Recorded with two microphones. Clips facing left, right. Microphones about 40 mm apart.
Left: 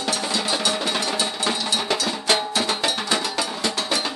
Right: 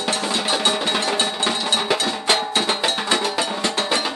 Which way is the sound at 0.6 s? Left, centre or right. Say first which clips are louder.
Right 3 dB; right.